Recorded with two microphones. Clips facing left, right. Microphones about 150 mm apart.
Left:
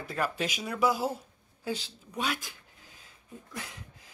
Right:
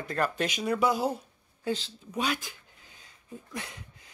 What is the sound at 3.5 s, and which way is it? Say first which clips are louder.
Speech: right 2 dB; centre (ahead or behind).